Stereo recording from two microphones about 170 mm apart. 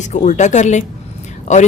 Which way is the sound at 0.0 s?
45° left (ahead or behind).